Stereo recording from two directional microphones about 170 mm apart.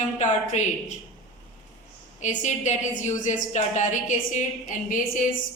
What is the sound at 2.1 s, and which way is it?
A woman's voice, 45° left (ahead or behind).